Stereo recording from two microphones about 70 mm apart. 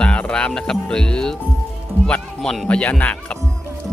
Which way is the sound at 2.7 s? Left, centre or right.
Centre.